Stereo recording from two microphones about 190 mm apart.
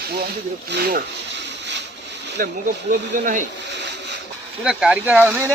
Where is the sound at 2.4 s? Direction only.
45° right (ahead or behind).